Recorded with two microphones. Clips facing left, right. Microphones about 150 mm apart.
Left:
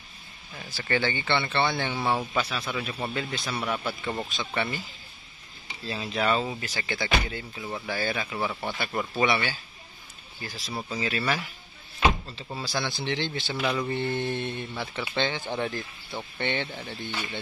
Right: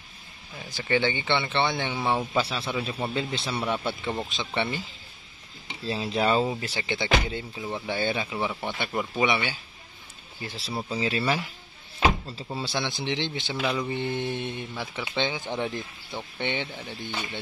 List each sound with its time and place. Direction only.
0.7 s speech: 20° right (ahead or behind)
2.3 s speech: 30° right (ahead or behind)
5.9 s speech: 30° right (ahead or behind)
10.4 s speech: 30° right (ahead or behind)
12.5 s speech: 25° right (ahead or behind)
13.6 s speech: 10° right (ahead or behind)
15.6 s speech: centre (ahead or behind)
16.3 s speech: 15° right (ahead or behind)